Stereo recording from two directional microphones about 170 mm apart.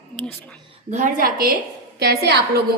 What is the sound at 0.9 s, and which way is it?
Speech, 45° right (ahead or behind).